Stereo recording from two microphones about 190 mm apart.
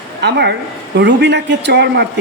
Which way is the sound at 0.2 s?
65° right (ahead or behind).